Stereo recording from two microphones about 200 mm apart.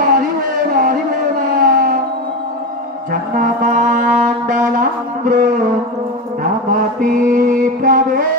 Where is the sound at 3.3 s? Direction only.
40° right (ahead or behind).